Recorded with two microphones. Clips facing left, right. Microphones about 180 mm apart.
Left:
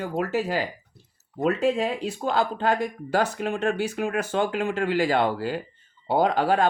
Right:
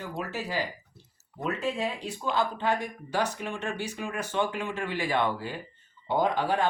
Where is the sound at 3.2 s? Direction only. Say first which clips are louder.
Left 5 dB; 90° left.